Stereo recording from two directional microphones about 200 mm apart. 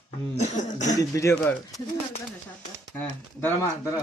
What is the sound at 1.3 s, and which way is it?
Speech, 5° left (ahead or behind).